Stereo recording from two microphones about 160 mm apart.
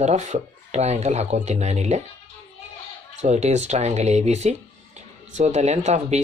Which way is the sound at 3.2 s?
45° right (ahead or behind).